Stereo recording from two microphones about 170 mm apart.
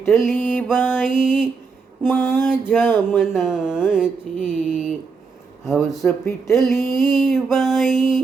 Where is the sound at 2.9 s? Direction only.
Centre (ahead or behind).